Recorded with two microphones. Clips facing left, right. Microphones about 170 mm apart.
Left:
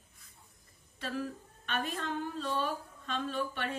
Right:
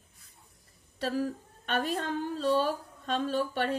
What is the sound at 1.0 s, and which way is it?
A woman's voice, 40° right (ahead or behind).